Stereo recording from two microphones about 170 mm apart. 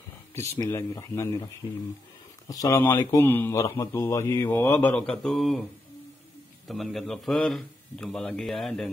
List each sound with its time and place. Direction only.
0.3 s speech: 15° left (ahead or behind)
6.7 s speech: centre (ahead or behind)